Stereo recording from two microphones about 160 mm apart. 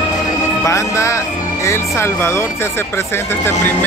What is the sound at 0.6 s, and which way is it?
Music, 20° left (ahead or behind).